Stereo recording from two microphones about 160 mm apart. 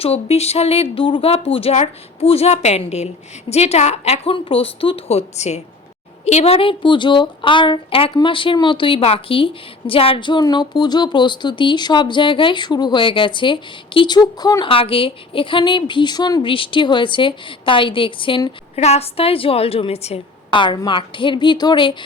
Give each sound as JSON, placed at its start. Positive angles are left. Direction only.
{"t": 0.0, "sound": "a woman's voice", "side_deg": 40}